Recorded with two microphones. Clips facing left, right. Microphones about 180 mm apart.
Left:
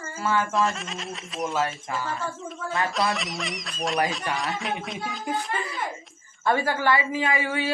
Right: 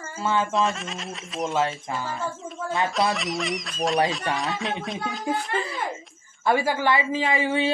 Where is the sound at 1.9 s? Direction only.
25° right (ahead or behind).